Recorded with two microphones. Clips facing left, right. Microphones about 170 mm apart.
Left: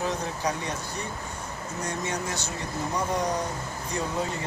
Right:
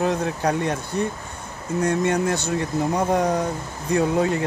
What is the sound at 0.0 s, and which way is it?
Speech, 60° right (ahead or behind).